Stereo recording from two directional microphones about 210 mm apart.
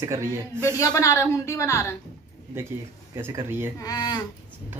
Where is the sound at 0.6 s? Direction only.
15° left (ahead or behind).